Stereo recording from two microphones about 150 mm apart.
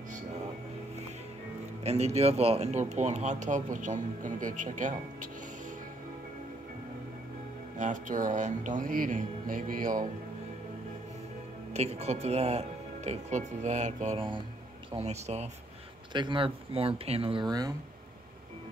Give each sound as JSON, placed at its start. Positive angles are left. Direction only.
{"t": 1.9, "sound": "speech", "side_deg": -45}
{"t": 7.7, "sound": "speech", "side_deg": -55}
{"t": 11.7, "sound": "speech", "side_deg": -45}
{"t": 14.1, "sound": "speech", "side_deg": -35}
{"t": 15.0, "sound": "speech", "side_deg": -45}
{"t": 16.1, "sound": "speech", "side_deg": -30}